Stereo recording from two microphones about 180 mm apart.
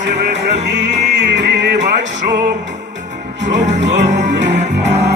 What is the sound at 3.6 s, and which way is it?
Music, 40° right (ahead or behind).